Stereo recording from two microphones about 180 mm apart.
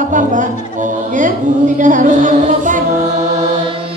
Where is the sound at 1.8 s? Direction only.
45° right (ahead or behind).